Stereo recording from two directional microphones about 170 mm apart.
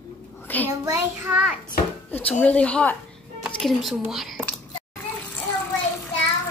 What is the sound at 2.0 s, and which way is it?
A woman's voice, 10° left (ahead or behind).